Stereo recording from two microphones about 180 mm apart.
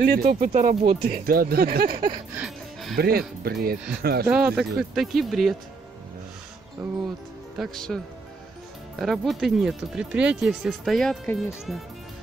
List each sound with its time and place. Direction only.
0.0 s speech: 55° right (ahead or behind)
2.3 s music: centre (ahead or behind)
3.0 s speech: 60° right (ahead or behind)
4.3 s speech: 5° right (ahead or behind)
7.5 s speech: centre (ahead or behind)